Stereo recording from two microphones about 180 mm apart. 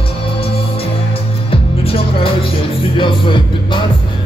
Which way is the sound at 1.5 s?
30° left (ahead or behind).